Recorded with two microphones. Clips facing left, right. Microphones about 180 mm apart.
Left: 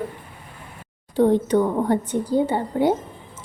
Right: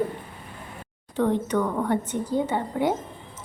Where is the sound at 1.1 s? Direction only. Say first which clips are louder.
Left 6 dB; 35° left (ahead or behind).